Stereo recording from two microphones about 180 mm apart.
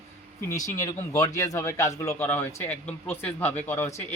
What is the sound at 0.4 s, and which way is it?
A man's voice, 20° left (ahead or behind).